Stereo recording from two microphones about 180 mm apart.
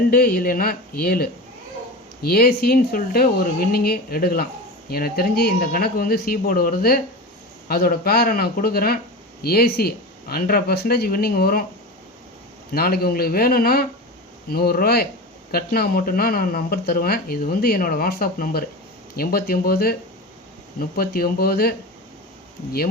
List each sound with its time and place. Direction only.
0.1 s speech: 55° left (ahead or behind)
12.7 s speech: 60° left (ahead or behind)